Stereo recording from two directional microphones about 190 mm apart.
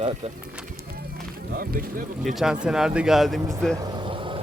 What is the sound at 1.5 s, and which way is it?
Speech, 50° right (ahead or behind).